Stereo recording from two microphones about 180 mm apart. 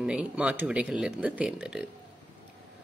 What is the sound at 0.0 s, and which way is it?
Speech, 5° right (ahead or behind).